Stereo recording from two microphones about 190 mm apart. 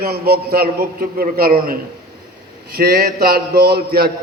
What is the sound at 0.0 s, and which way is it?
A man's voice, 55° right (ahead or behind).